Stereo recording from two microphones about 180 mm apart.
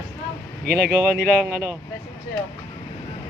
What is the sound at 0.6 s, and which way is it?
Speech, 60° right (ahead or behind).